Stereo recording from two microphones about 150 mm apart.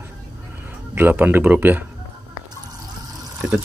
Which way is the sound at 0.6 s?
15° right (ahead or behind).